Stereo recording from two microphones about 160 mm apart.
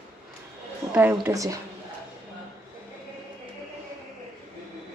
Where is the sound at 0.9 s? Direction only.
10° right (ahead or behind).